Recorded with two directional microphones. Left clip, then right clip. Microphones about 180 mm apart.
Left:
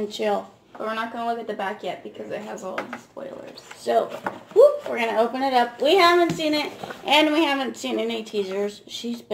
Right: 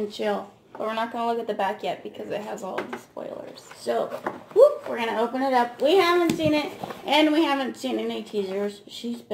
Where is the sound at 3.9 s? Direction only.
15° left (ahead or behind).